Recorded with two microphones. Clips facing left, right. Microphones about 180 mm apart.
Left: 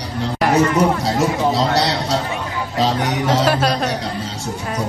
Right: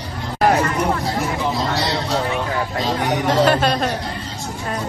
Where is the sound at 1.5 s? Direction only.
80° left.